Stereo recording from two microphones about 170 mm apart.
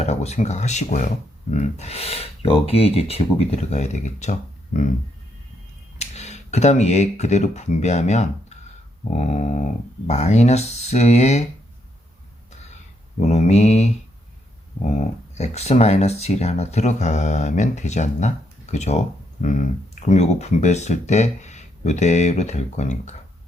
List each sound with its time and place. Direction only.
0.0 s speech: 40° left (ahead or behind)
6.0 s speech: 40° left (ahead or behind)
13.2 s speech: 40° left (ahead or behind)